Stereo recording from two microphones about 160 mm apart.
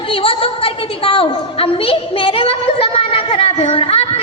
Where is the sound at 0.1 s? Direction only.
35° left (ahead or behind).